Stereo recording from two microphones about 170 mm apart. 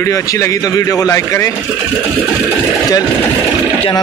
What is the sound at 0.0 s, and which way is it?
Speech, 20° left (ahead or behind).